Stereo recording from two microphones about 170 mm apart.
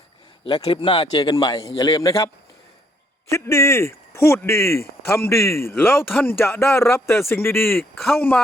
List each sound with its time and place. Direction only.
0.4 s a man's voice: 30° left (ahead or behind); by 8.4 s 10° left (ahead or behind)